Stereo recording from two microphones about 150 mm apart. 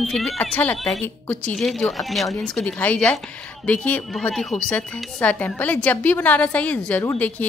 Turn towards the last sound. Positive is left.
turn(degrees=10)  # may be behind; listen again after turning